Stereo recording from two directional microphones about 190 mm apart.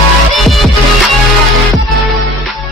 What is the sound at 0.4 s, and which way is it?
Music, centre (ahead or behind).